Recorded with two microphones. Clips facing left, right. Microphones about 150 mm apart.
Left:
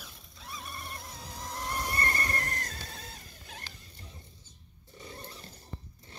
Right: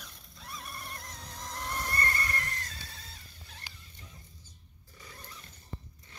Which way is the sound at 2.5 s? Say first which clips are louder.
Left 4 dB; 50° left (ahead or behind).